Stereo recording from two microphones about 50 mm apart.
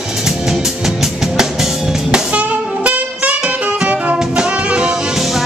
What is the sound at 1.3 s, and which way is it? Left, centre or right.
Music, centre.